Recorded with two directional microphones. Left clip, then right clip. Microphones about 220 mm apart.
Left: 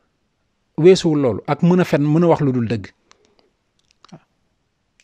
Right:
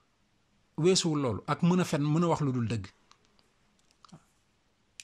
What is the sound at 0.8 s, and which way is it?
Speech, 30° left (ahead or behind).